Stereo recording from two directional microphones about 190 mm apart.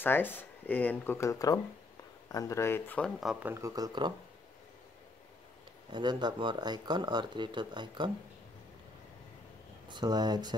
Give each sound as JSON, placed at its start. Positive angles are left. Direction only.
{"t": 0.0, "sound": "speech", "side_deg": 10}
{"t": 3.2, "sound": "speech", "side_deg": -5}
{"t": 5.9, "sound": "speech", "side_deg": -25}
{"t": 9.8, "sound": "speech", "side_deg": -20}